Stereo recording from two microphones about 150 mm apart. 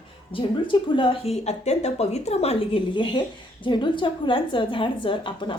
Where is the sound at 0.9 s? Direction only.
35° left (ahead or behind).